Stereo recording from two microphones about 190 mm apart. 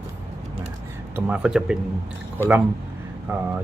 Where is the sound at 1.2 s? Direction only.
5° right (ahead or behind).